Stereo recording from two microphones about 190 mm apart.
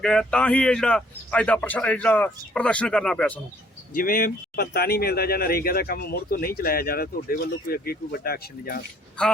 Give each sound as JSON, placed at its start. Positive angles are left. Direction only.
{"t": 0.0, "sound": "a man's voice", "side_deg": 5}
{"t": 3.9, "sound": "speech", "side_deg": 50}